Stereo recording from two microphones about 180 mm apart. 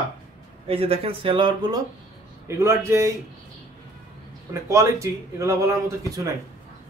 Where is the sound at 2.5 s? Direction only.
15° right (ahead or behind).